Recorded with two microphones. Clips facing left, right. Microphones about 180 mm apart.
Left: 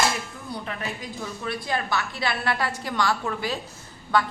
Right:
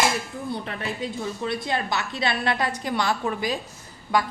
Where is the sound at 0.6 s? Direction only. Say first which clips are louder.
Right 3 dB; 30° right (ahead or behind).